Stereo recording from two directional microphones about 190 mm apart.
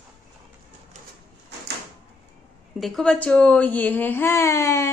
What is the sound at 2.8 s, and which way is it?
Speech, 5° left (ahead or behind).